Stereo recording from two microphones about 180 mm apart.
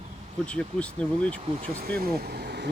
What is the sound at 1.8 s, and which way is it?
Speech, 60° right (ahead or behind).